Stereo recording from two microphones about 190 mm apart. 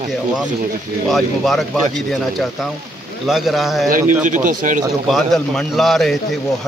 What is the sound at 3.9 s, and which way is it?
Speech, 40° right (ahead or behind).